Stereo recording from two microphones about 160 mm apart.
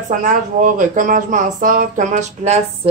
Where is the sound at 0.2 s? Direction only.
50° right (ahead or behind).